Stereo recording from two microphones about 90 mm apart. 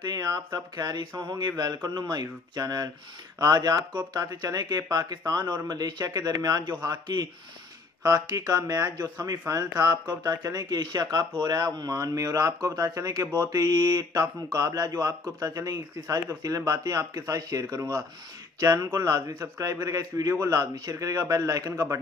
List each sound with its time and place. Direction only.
0.0 s a man's voice: 45° right (ahead or behind)